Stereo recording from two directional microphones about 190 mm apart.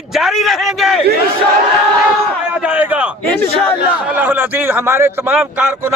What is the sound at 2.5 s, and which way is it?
A man's voice, 5° right (ahead or behind).